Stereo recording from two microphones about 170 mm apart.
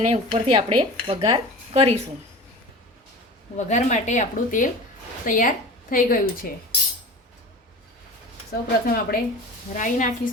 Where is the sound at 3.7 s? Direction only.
45° left (ahead or behind).